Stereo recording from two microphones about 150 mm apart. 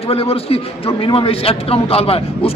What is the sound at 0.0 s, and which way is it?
A man's voice, 40° left (ahead or behind).